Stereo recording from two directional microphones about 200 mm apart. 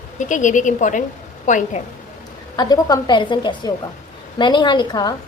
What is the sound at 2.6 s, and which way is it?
A woman's voice, 20° left (ahead or behind).